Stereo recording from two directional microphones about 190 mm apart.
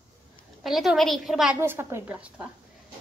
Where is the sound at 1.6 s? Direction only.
10° right (ahead or behind).